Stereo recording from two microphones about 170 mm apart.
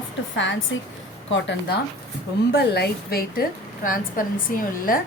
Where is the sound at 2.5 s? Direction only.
75° left (ahead or behind).